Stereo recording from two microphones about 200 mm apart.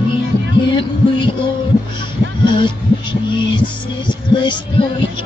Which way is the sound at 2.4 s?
25° left (ahead or behind).